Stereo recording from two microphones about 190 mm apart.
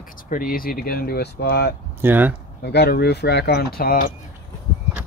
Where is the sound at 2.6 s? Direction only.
60° left (ahead or behind).